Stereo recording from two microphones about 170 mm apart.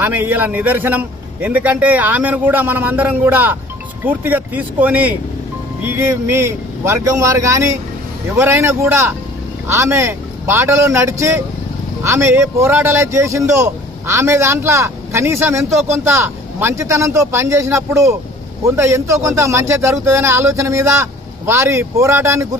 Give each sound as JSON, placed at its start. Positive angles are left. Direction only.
{"t": 0.0, "sound": "a man's voice", "side_deg": -10}